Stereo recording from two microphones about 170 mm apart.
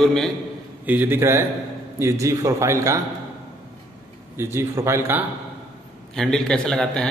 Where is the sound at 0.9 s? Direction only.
10° right (ahead or behind).